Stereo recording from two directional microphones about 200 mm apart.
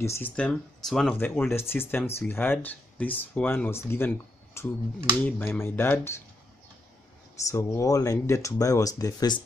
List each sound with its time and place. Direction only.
0.0 s speech: 10° left (ahead or behind)
7.4 s speech: 15° left (ahead or behind)